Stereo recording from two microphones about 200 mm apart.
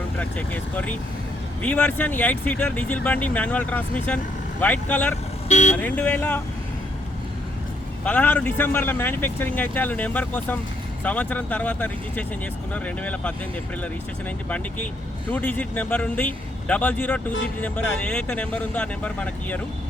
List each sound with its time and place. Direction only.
0.2 s a man's voice: 5° left (ahead or behind)
5.5 s speech: 35° left (ahead or behind)
5.7 s a man's voice: 10° left (ahead or behind)
8.0 s a man's voice: 10° left (ahead or behind)
15.3 s a man's voice: 10° left (ahead or behind)